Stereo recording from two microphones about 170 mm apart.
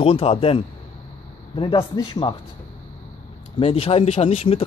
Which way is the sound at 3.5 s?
35° left (ahead or behind).